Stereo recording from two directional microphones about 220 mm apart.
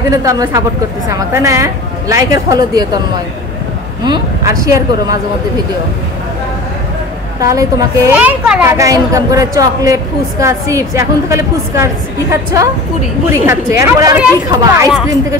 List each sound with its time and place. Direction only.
0.1 s a woman's voice: 15° right (ahead or behind)
4.6 s a woman's voice: 15° right (ahead or behind)
7.3 s a woman's voice: 15° right (ahead or behind)